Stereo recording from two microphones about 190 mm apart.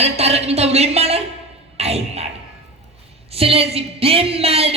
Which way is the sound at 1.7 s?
35° right (ahead or behind).